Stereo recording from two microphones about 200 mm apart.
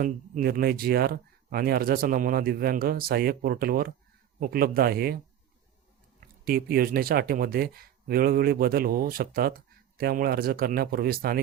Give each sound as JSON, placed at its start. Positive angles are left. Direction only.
{"t": 0.0, "sound": "speech", "side_deg": -45}